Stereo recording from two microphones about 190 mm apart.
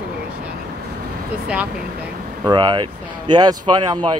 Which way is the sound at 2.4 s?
25° right (ahead or behind).